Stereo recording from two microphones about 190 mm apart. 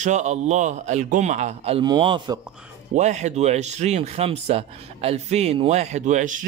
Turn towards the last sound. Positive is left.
turn(degrees=-40)  # may be behind; listen again after turning